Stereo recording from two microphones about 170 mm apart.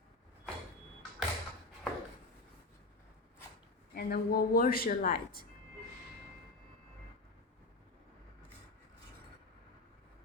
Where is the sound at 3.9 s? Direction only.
65° left (ahead or behind).